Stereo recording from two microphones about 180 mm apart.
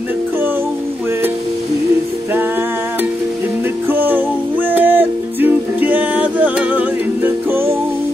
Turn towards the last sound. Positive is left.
turn(degrees=-10)  # may be behind; listen again after turning